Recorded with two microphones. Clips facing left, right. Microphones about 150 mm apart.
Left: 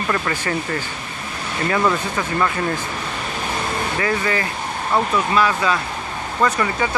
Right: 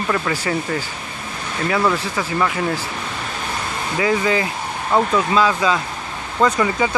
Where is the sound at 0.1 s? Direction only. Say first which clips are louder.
Right 2 dB; 5° right (ahead or behind).